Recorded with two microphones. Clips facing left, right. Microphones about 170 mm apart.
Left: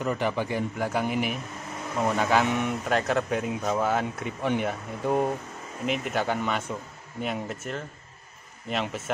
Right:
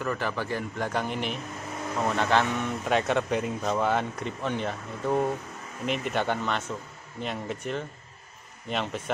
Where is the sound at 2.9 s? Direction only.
Centre (ahead or behind).